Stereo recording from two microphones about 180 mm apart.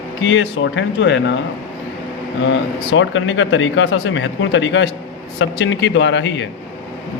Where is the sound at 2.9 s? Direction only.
90° left.